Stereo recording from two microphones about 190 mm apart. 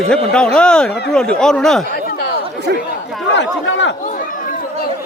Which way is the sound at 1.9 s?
55° left (ahead or behind).